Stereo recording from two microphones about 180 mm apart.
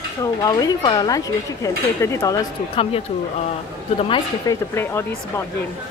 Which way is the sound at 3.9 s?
30° left (ahead or behind).